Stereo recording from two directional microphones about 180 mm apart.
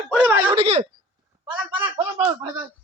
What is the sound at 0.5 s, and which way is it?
Speech, 35° right (ahead or behind).